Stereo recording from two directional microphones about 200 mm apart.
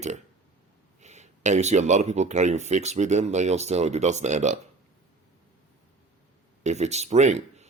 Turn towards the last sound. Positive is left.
turn(degrees=-35)  # may be behind; listen again after turning